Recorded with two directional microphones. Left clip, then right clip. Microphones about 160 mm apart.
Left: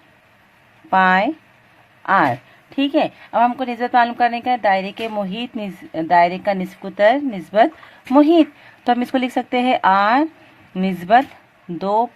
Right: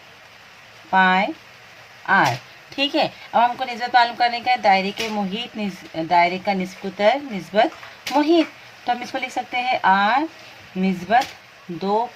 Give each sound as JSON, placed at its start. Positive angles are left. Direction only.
{"t": 0.9, "sound": "speech", "side_deg": 60}
{"t": 2.7, "sound": "a woman's voice", "side_deg": 45}